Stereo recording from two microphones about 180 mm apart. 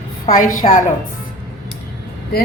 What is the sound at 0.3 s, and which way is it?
Speech, 50° left (ahead or behind).